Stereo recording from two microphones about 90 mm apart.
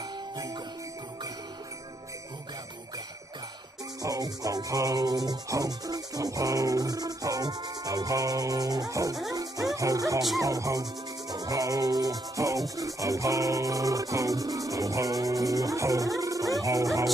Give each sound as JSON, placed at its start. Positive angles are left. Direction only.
{"t": 4.0, "sound": "rub", "side_deg": -40}
{"t": 9.3, "sound": "music", "side_deg": -40}
{"t": 10.4, "sound": "rub", "side_deg": -40}
{"t": 16.2, "sound": "music", "side_deg": -40}
{"t": 16.5, "sound": "speech", "side_deg": -40}